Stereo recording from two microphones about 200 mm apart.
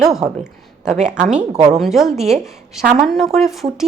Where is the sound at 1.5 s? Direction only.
30° right (ahead or behind).